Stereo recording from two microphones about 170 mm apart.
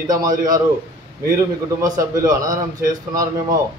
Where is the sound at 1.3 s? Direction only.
20° right (ahead or behind).